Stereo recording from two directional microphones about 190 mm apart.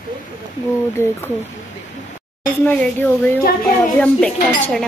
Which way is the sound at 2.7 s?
10° left (ahead or behind).